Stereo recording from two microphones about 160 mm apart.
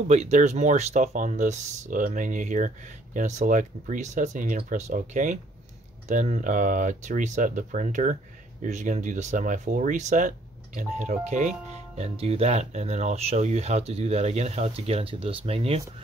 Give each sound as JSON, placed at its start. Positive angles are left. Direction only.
{"t": 0.1, "sound": "speech", "side_deg": -45}